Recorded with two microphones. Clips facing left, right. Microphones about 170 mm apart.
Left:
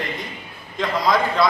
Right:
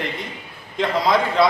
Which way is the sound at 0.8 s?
25° right (ahead or behind).